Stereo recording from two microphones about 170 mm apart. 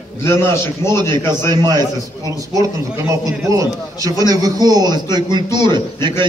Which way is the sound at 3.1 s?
20° right (ahead or behind).